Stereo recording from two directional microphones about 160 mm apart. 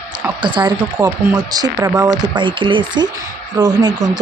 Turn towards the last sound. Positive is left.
turn(degrees=-25)  # may be behind; listen again after turning